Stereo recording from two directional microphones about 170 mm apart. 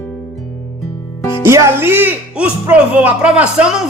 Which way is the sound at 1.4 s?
15° right (ahead or behind).